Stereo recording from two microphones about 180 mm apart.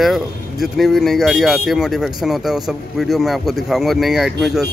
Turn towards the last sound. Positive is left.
turn(degrees=0)  # may be behind; listen again after turning